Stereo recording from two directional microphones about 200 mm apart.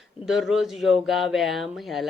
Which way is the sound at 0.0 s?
Centre (ahead or behind).